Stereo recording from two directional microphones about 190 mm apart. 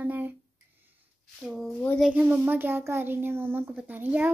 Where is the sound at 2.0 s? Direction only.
5° right (ahead or behind).